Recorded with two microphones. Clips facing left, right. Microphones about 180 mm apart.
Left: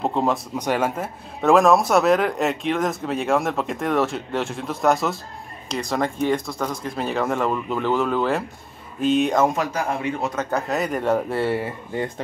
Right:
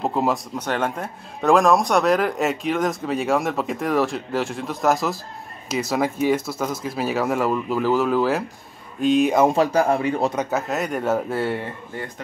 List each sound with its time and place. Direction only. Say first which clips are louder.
0.0 s speech: even; 5° right (ahead or behind)
0.6 s speech: left 2 dB; 10° left (ahead or behind)
9.5 s speech: right 6 dB; 30° right (ahead or behind)
10.3 s speech: right 1 dB; 10° right (ahead or behind)
10.7 s speech: left 1 dB; centre (ahead or behind)